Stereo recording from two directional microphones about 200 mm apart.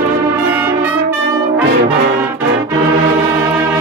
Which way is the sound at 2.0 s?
55° right (ahead or behind).